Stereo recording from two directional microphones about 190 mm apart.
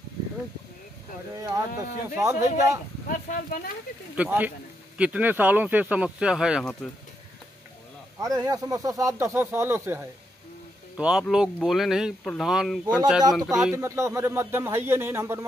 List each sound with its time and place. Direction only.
1.3 s speech: 15° right (ahead or behind)
3.1 s speech: 45° left (ahead or behind)
4.2 s speech: 10° right (ahead or behind)
8.2 s speech: 20° right (ahead or behind); by 13.7 s centre (ahead or behind)
13.7 s speech: 15° right (ahead or behind)